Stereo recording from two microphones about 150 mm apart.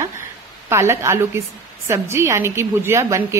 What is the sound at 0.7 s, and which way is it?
A woman's voice, 20° right (ahead or behind).